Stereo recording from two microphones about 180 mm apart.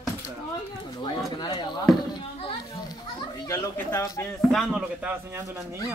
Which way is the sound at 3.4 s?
15° left (ahead or behind).